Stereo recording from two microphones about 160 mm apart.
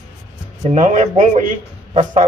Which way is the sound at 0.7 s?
45° right (ahead or behind).